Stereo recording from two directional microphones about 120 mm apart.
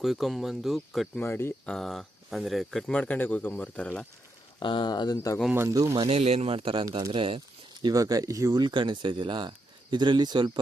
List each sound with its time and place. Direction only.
0.0 s speech: centre (ahead or behind)
1.1 s speech: 20° left (ahead or behind)
1.6 s speech: 5° left (ahead or behind)
4.6 s speech: 40° left (ahead or behind)
5.1 s speech: 25° left (ahead or behind)
5.5 s speech: 25° right (ahead or behind)
5.9 s speech: 55° right (ahead or behind); by 10.6 s 40° right (ahead or behind)